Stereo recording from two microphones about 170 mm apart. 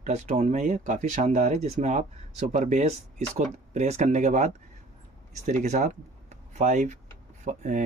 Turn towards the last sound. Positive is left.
turn(degrees=-45)  # may be behind; listen again after turning